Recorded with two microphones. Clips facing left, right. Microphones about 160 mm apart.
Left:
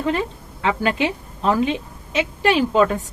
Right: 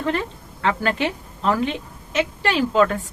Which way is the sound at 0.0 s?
15° left (ahead or behind).